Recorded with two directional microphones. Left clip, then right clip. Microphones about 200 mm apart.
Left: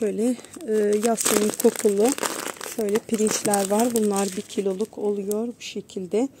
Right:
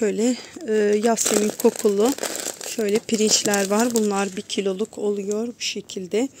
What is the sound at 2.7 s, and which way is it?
Speech, 5° right (ahead or behind).